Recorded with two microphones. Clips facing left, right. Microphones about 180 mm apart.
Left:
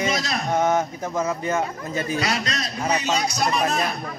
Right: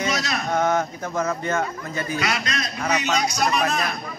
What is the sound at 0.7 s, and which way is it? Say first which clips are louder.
Speech: left 1 dB; 10° left (ahead or behind).